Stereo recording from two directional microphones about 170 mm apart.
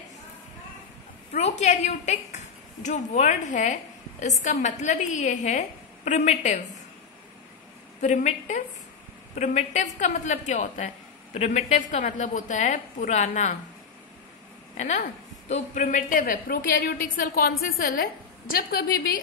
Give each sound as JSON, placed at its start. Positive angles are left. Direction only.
{"t": 1.3, "sound": "a woman's voice", "side_deg": 40}
{"t": 8.0, "sound": "a woman's voice", "side_deg": 45}
{"t": 14.8, "sound": "a woman's voice", "side_deg": 45}